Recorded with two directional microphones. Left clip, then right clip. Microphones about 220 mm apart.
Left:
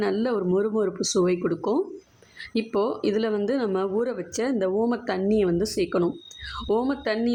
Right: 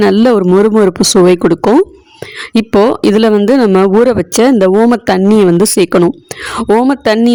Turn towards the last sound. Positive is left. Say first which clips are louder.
# right 16 dB
turn(degrees=-45)  # may be behind; listen again after turning